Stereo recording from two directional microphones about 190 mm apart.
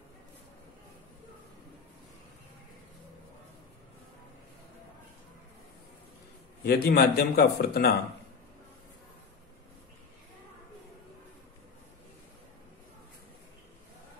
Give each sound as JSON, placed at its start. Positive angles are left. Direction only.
{"t": 6.6, "sound": "speech", "side_deg": 55}